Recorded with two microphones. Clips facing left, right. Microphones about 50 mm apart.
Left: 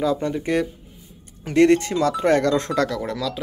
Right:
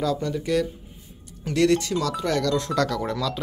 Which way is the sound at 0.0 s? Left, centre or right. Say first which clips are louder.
Left 3 dB; left.